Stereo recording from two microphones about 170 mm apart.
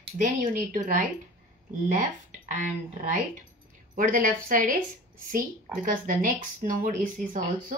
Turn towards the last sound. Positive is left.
turn(degrees=-50)  # may be behind; listen again after turning